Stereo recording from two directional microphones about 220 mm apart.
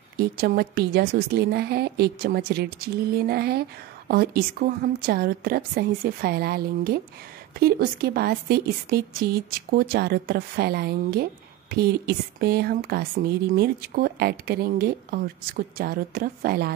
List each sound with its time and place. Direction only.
0.4 s speech: 45° right (ahead or behind)